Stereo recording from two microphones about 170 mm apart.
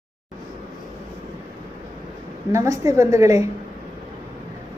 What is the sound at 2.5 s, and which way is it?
Speech, 20° right (ahead or behind).